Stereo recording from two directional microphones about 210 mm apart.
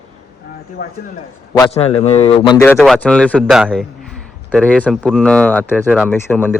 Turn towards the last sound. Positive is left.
turn(degrees=10)  # may be behind; listen again after turning